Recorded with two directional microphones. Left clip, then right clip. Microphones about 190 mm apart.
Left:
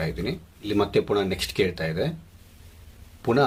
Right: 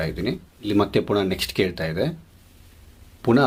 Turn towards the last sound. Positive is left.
turn(degrees=-30)  # may be behind; listen again after turning